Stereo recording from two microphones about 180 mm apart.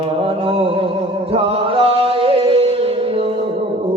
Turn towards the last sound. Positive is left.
turn(degrees=-30)  # may be behind; listen again after turning